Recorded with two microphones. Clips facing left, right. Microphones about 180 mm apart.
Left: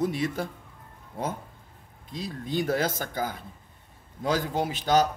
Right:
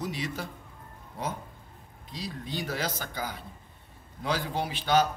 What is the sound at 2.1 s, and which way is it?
Speech, 50° left (ahead or behind).